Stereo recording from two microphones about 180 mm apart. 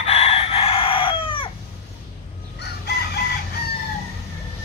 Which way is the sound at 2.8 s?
65° left (ahead or behind).